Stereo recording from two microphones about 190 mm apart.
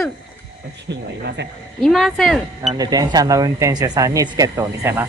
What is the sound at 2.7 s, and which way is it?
Speech, 20° right (ahead or behind).